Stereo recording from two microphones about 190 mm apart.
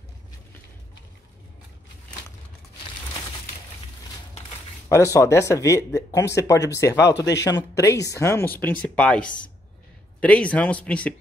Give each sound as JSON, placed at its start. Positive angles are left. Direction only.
{"t": 4.8, "sound": "speech", "side_deg": 15}